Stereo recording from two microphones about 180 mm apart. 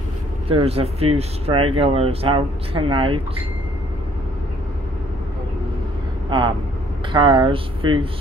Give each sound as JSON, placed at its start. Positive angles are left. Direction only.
{"t": 0.5, "sound": "speech", "side_deg": -30}
{"t": 6.3, "sound": "speech", "side_deg": -25}